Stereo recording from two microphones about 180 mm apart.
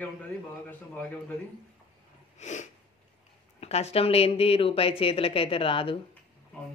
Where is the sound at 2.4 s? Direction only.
40° left (ahead or behind).